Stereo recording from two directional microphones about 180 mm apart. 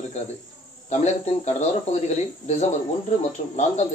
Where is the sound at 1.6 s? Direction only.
40° left (ahead or behind).